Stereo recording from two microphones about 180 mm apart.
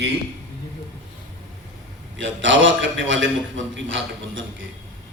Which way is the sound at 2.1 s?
90° right.